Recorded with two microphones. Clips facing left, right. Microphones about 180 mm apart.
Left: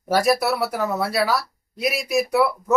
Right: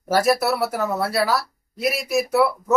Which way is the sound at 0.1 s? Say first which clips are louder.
Even; centre (ahead or behind).